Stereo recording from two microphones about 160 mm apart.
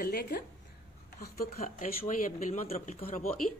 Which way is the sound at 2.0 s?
50° left (ahead or behind).